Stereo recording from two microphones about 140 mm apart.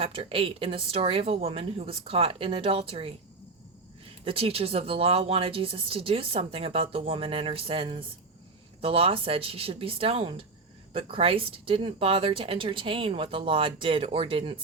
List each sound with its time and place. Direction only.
0.0 s speech: 45° right (ahead or behind)
4.3 s speech: 40° right (ahead or behind)